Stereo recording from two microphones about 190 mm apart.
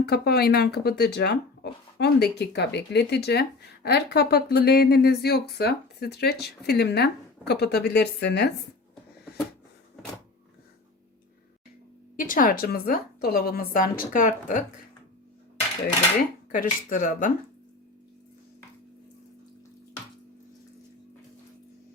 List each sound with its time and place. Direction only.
0.0 s speech: 55° left (ahead or behind)
12.1 s a woman's voice: 45° left (ahead or behind)
16.5 s a woman's voice: 45° left (ahead or behind)